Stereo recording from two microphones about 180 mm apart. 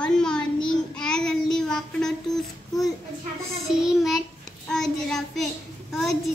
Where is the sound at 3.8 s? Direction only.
Centre (ahead or behind).